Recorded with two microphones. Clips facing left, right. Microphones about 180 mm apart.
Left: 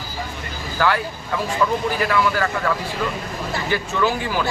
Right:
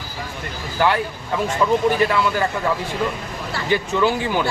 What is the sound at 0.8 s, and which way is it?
A man's voice, 20° right (ahead or behind).